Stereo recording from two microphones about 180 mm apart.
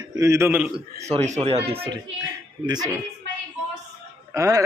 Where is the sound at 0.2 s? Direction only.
15° right (ahead or behind).